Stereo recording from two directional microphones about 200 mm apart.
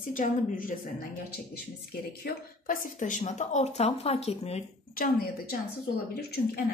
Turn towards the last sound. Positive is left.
turn(degrees=50)  # may be behind; listen again after turning